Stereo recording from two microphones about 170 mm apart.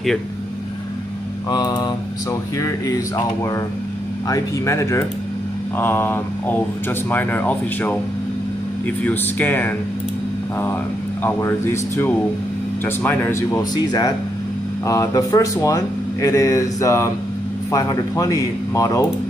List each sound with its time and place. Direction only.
1.5 s speech: 25° left (ahead or behind)
4.3 s speech: 15° left (ahead or behind)
11.2 s speech: 15° left (ahead or behind)